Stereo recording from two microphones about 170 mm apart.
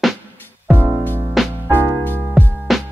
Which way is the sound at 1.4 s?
Centre (ahead or behind).